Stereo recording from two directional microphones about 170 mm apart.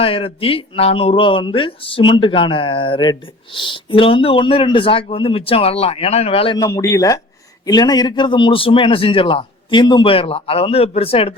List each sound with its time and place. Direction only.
0.0 s speech: 35° left (ahead or behind)
6.6 s speech: 20° left (ahead or behind); by 11.3 s 35° left (ahead or behind)